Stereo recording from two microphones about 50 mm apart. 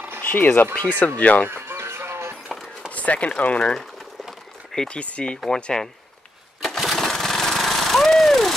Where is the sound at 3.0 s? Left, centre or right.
Left.